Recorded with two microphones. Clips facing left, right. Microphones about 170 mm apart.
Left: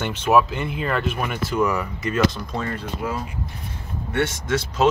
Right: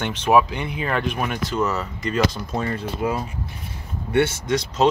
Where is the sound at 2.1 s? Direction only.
Centre (ahead or behind).